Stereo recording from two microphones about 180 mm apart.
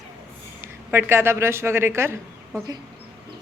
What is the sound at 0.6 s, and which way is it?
A woman's voice, 15° right (ahead or behind).